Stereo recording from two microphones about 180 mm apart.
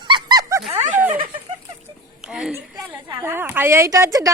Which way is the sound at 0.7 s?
45° right (ahead or behind).